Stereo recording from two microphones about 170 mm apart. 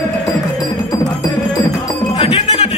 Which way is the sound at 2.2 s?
40° left (ahead or behind).